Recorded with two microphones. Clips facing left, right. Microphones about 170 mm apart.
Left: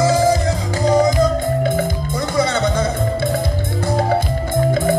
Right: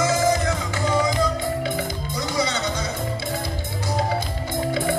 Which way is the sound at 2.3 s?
55° left (ahead or behind).